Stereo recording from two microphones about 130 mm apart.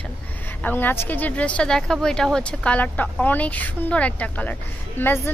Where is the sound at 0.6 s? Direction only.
15° left (ahead or behind).